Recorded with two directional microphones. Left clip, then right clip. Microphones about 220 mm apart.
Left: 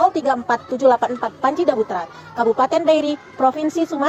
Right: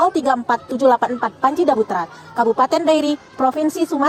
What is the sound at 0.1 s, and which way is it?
A woman's voice, 40° right (ahead or behind).